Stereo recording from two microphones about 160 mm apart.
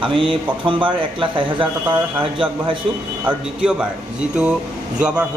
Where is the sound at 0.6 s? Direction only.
30° right (ahead or behind).